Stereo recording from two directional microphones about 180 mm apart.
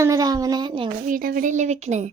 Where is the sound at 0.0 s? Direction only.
20° right (ahead or behind).